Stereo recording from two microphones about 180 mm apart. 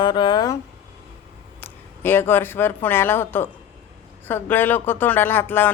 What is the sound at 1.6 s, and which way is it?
Speech, 10° left (ahead or behind).